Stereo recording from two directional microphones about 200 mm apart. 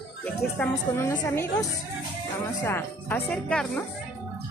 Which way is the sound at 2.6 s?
10° left (ahead or behind).